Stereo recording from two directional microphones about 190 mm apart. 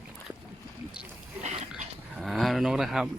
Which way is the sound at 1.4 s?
35° right (ahead or behind).